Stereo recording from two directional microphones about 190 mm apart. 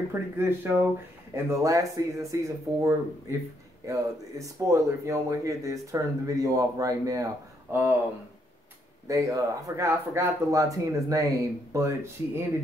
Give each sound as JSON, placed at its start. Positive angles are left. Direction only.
{"t": 0.1, "sound": "speech", "side_deg": -10}
{"t": 9.0, "sound": "speech", "side_deg": -15}